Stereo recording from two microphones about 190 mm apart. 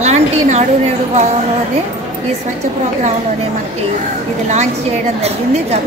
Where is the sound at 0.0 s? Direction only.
35° right (ahead or behind).